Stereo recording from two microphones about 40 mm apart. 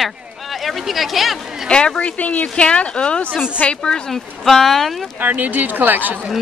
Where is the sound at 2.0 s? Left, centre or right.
Left.